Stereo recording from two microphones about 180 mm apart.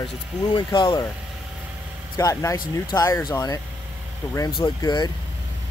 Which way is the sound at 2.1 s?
20° left (ahead or behind).